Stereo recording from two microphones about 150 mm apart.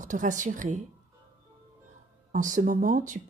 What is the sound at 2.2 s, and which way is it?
Speech, 60° right (ahead or behind).